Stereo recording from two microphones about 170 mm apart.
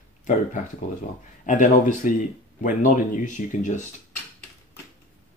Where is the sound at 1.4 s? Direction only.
50° left (ahead or behind).